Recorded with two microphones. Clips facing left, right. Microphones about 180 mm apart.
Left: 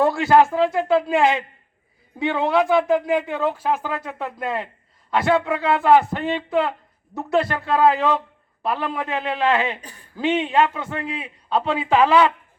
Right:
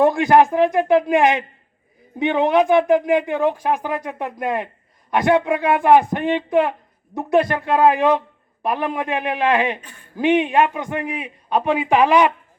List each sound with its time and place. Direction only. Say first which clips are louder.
0.0 s speech: right 2 dB; 15° right (ahead or behind)